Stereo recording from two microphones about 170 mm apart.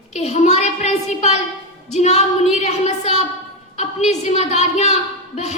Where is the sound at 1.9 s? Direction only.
40° left (ahead or behind).